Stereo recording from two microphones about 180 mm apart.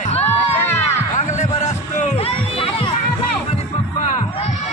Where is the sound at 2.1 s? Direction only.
30° left (ahead or behind).